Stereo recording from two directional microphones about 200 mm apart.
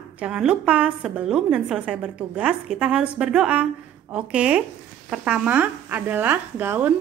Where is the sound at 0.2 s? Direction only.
5° right (ahead or behind).